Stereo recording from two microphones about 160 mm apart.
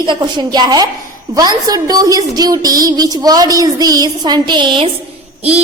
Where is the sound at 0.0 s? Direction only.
30° right (ahead or behind).